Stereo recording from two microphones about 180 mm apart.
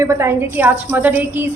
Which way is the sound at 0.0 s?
15° right (ahead or behind).